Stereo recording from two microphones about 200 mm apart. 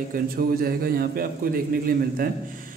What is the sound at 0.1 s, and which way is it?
Speech, 45° right (ahead or behind).